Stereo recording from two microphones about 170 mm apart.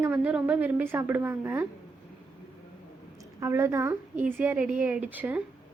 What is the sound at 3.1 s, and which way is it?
A woman's voice, 15° right (ahead or behind).